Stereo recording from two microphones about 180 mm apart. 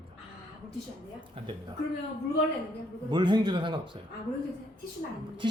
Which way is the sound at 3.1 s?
25° right (ahead or behind).